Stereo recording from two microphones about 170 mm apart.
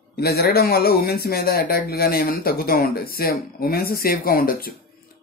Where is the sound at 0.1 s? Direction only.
65° left (ahead or behind).